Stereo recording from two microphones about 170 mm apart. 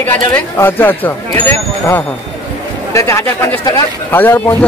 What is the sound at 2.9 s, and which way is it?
Speech, 15° left (ahead or behind).